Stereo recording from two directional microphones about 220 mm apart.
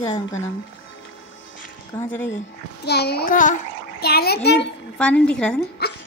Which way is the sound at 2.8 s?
45° left (ahead or behind).